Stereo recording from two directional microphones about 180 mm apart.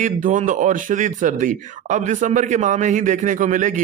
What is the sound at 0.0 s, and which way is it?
Speech, 45° right (ahead or behind).